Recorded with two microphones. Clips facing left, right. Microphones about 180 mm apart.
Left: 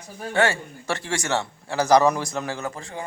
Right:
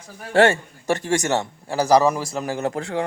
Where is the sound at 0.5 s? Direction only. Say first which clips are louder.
Right 5 dB; 45° right (ahead or behind).